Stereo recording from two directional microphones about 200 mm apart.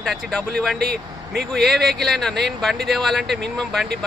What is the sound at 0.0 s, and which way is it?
Speech, centre (ahead or behind).